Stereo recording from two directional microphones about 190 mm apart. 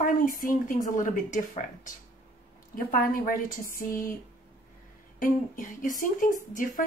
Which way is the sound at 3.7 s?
45° left (ahead or behind).